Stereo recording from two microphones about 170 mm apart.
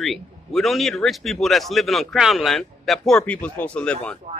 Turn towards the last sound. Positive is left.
turn(degrees=5)  # may be behind; listen again after turning